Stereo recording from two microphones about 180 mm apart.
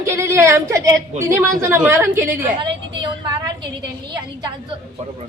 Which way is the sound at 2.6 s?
25° right (ahead or behind).